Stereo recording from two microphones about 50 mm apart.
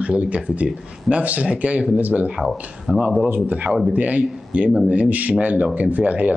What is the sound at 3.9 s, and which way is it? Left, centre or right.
Speech, right.